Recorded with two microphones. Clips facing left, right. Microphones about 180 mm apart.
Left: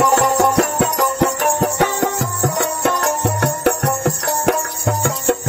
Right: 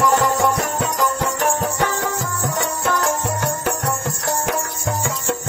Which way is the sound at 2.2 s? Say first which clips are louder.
Left 4 dB; 70° left (ahead or behind).